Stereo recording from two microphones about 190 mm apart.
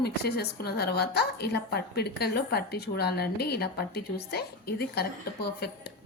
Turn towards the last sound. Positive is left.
turn(degrees=55)  # may be behind; listen again after turning